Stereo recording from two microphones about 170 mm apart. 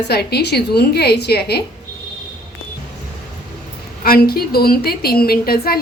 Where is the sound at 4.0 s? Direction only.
60° left (ahead or behind).